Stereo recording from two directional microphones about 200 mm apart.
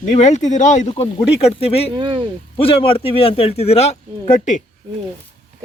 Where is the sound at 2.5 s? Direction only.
25° left (ahead or behind).